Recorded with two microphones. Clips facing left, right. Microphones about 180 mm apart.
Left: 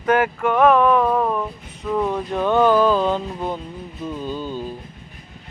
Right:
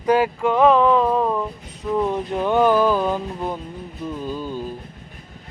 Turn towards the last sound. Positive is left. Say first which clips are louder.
# even
turn(degrees=-5)  # may be behind; listen again after turning